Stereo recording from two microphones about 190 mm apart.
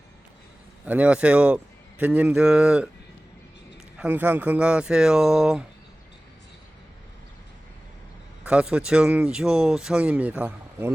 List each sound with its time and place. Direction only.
0.9 s speech: 5° right (ahead or behind)
3.9 s speech: 10° right (ahead or behind)
8.4 s speech: 5° right (ahead or behind)